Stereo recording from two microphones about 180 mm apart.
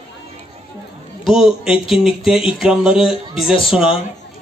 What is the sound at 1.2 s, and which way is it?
Speech, 5° right (ahead or behind).